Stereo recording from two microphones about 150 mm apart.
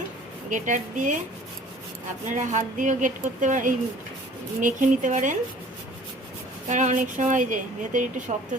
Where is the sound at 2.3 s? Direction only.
55° right (ahead or behind).